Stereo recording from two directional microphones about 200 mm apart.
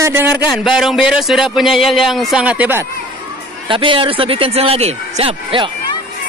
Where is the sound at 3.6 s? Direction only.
25° right (ahead or behind).